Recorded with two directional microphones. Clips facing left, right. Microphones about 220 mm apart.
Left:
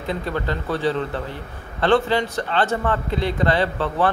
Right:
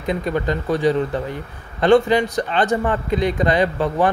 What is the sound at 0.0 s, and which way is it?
Speech, 15° right (ahead or behind).